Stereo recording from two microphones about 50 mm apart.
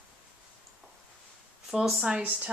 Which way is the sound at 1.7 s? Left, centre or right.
Centre.